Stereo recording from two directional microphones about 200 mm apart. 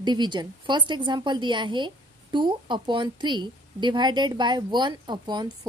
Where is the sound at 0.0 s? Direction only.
20° right (ahead or behind).